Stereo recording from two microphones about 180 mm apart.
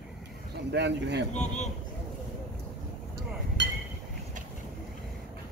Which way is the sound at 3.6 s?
80° right.